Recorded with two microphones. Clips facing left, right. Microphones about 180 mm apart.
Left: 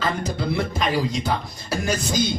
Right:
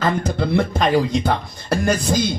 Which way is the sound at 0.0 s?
55° right (ahead or behind).